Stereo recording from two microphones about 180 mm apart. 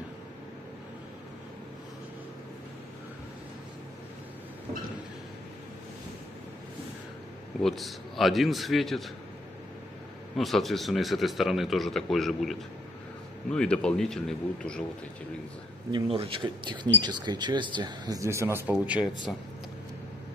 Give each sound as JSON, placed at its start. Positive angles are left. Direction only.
{"t": 7.6, "sound": "a man's voice", "side_deg": 0}
{"t": 10.3, "sound": "a man's voice", "side_deg": 0}
{"t": 15.9, "sound": "speech", "side_deg": -30}
{"t": 19.3, "sound": "a man's voice", "side_deg": 5}